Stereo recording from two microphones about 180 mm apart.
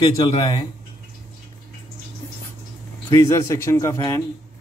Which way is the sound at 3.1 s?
15° left (ahead or behind).